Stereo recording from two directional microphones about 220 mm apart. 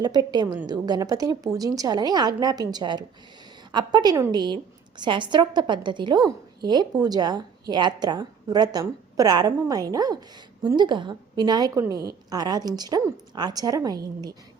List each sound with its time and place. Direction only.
0.0 s a woman's voice: 20° right (ahead or behind)